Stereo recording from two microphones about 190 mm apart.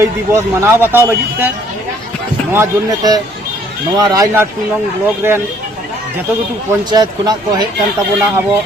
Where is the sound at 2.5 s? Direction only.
15° right (ahead or behind).